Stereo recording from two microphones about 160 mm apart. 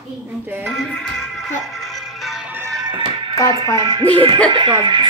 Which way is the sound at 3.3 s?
20° left (ahead or behind).